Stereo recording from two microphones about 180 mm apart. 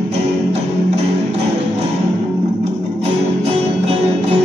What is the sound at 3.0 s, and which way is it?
Music, 35° right (ahead or behind).